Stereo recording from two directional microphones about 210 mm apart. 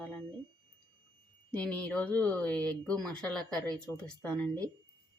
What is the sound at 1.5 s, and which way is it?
Speech, 5° left (ahead or behind).